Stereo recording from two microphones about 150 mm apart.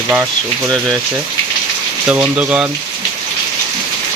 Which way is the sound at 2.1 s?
10° right (ahead or behind).